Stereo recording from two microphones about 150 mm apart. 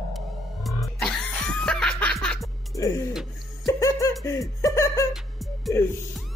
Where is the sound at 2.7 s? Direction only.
20° left (ahead or behind).